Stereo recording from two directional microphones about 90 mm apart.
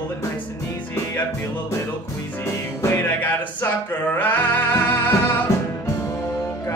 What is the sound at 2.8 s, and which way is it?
Music, 20° left (ahead or behind).